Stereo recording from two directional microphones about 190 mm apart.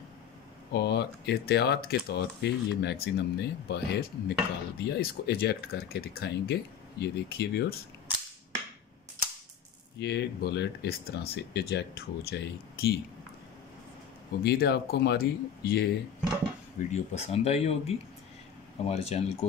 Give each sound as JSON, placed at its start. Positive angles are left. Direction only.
{"t": 0.7, "sound": "speech", "side_deg": 60}
{"t": 9.9, "sound": "speech", "side_deg": 60}
{"t": 14.4, "sound": "speech", "side_deg": 60}
{"t": 16.9, "sound": "speech", "side_deg": 35}